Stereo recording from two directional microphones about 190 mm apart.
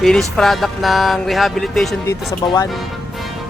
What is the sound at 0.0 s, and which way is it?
Speech, 5° left (ahead or behind).